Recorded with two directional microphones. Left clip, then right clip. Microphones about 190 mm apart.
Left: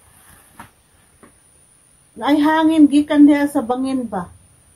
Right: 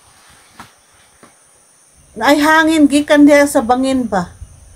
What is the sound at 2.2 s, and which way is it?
A woman's voice, 35° right (ahead or behind).